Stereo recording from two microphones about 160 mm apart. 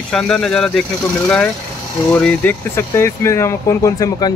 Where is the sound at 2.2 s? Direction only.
10° left (ahead or behind).